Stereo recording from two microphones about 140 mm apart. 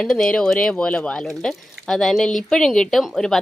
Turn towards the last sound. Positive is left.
turn(degrees=5)  # may be behind; listen again after turning